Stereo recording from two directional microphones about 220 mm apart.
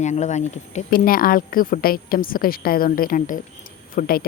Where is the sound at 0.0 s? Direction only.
30° left (ahead or behind).